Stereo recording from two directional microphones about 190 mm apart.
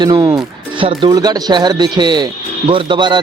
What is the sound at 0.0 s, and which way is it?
Speech, 20° right (ahead or behind).